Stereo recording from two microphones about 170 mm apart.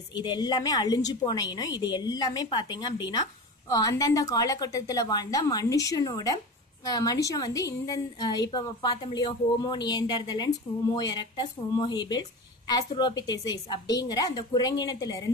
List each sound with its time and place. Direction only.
0.1 s a woman's voice: 25° left (ahead or behind)